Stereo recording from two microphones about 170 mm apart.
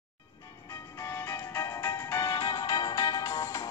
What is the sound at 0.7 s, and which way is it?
Music, 15° left (ahead or behind).